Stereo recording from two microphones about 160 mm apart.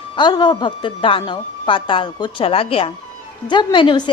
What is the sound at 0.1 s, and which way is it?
A woman's voice, 30° left (ahead or behind).